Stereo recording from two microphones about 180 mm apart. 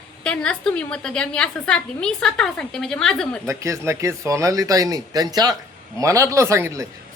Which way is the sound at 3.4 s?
15° right (ahead or behind).